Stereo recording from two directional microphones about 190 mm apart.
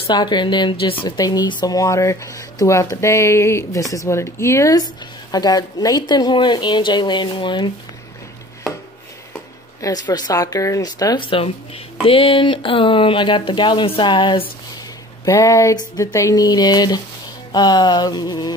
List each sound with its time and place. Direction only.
0.0 s speech: 25° left (ahead or behind)
9.8 s speech: 20° left (ahead or behind)